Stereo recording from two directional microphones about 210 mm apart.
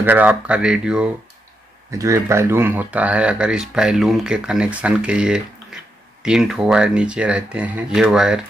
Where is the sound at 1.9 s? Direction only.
15° right (ahead or behind).